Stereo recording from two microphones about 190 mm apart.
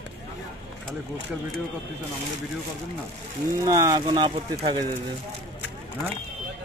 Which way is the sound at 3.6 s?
20° right (ahead or behind).